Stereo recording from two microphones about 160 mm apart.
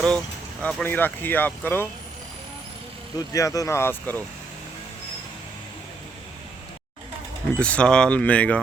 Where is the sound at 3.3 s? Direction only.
20° left (ahead or behind).